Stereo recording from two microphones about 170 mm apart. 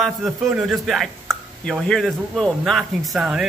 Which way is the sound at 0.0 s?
Centre (ahead or behind).